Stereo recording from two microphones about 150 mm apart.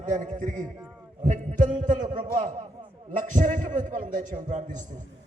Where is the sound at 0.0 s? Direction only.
55° right (ahead or behind).